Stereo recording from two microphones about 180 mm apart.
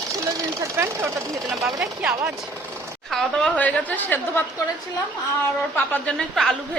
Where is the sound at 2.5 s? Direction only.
15° right (ahead or behind).